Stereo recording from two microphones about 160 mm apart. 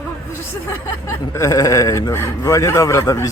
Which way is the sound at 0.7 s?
15° left (ahead or behind).